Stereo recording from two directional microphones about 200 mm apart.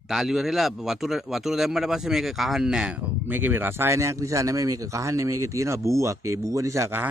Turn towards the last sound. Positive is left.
turn(degrees=-10)  # may be behind; listen again after turning